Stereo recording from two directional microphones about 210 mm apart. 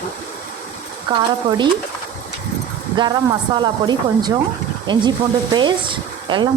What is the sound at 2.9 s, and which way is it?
Speech, 20° right (ahead or behind).